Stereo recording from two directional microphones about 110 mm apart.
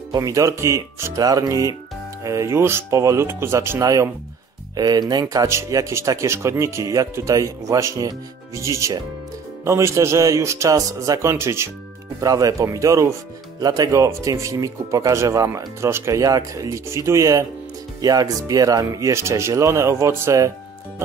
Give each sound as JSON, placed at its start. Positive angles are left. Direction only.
{"t": 0.1, "sound": "speech", "side_deg": -30}